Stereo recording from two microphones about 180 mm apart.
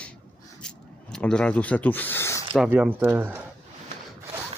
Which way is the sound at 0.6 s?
5° left (ahead or behind).